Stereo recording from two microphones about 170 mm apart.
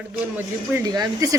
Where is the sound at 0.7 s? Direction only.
20° right (ahead or behind).